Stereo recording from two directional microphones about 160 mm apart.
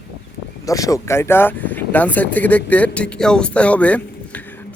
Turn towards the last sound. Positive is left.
turn(degrees=10)  # may be behind; listen again after turning